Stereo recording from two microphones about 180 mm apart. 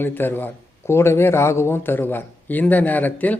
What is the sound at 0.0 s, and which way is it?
A man's voice, 10° left (ahead or behind).